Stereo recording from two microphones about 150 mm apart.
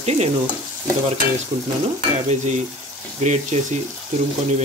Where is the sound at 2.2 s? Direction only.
50° right (ahead or behind).